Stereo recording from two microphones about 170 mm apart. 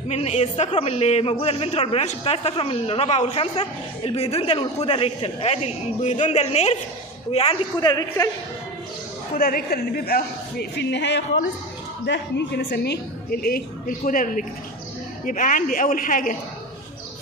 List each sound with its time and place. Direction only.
0.1 s a man's voice: 40° left (ahead or behind)
9.3 s a woman's voice: 60° left (ahead or behind)